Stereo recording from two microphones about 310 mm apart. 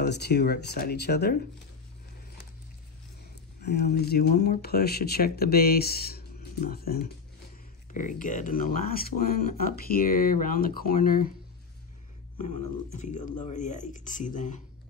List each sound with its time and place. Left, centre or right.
0.0 s speech: left
3.6 s speech: left
12.4 s speech: left